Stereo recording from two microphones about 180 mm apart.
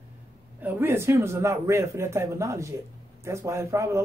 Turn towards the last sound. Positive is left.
turn(degrees=-15)  # may be behind; listen again after turning